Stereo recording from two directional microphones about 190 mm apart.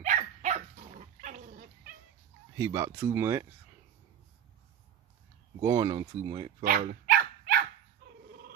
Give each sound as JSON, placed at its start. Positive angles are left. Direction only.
{"t": 0.0, "sound": "dog", "side_deg": -40}
{"t": 2.5, "sound": "speech", "side_deg": -15}
{"t": 5.6, "sound": "speech", "side_deg": -20}
{"t": 6.6, "sound": "dog", "side_deg": -50}